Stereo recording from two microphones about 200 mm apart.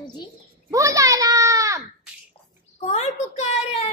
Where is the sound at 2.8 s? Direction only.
35° left (ahead or behind).